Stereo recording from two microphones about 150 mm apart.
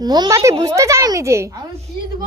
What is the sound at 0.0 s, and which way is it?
Speech, 25° right (ahead or behind).